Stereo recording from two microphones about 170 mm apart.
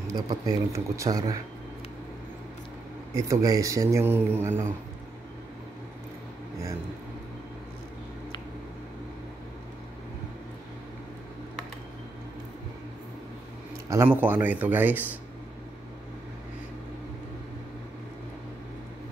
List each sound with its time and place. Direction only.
0.1 s speech: 20° right (ahead or behind)
3.2 s speech: 20° right (ahead or behind)
13.8 s speech: 15° right (ahead or behind)